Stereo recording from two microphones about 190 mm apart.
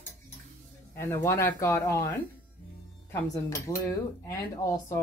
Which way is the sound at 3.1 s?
15° left (ahead or behind).